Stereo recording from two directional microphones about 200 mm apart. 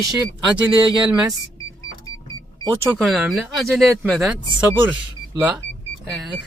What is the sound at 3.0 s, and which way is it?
Speech, centre (ahead or behind).